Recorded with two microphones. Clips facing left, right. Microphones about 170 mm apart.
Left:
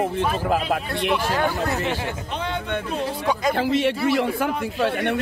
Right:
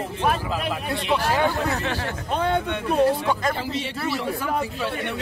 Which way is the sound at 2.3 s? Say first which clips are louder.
Right 6 dB; 50° right (ahead or behind).